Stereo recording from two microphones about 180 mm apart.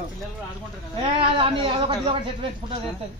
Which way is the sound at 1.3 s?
30° right (ahead or behind).